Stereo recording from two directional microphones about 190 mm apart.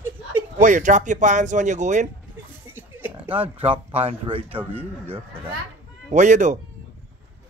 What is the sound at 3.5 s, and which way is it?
Speech, 30° right (ahead or behind).